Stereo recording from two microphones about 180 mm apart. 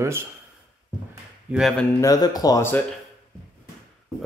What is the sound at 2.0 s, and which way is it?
Speech, 20° left (ahead or behind).